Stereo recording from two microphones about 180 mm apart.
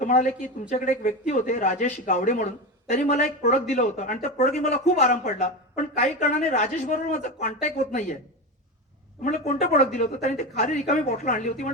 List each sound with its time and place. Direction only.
0.0 s speech: 45° left (ahead or behind)
9.2 s speech: 40° left (ahead or behind)